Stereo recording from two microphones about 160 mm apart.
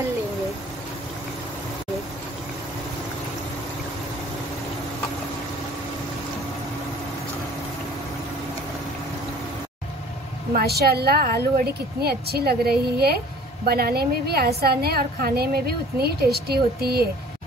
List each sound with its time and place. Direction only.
10.5 s a woman's voice: 80° right